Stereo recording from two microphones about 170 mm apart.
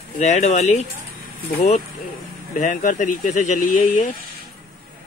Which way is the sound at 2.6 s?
45° left (ahead or behind).